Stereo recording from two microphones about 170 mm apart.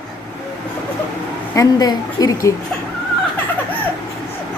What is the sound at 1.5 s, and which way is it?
Speech, 20° left (ahead or behind).